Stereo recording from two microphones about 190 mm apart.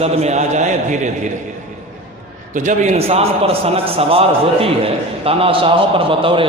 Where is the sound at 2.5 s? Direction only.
40° right (ahead or behind).